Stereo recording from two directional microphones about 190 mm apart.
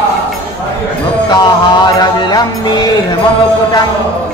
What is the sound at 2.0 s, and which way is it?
Music, 20° left (ahead or behind).